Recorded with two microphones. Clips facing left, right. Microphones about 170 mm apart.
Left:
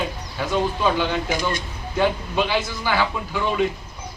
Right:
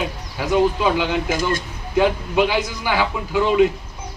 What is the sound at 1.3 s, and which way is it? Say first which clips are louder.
Speech: right 3 dB; 45° right (ahead or behind).